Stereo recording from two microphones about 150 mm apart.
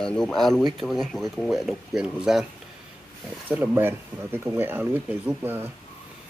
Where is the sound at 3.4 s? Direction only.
15° right (ahead or behind).